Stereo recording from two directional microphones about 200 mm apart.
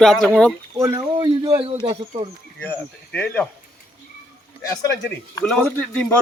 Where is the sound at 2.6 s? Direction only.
5° left (ahead or behind).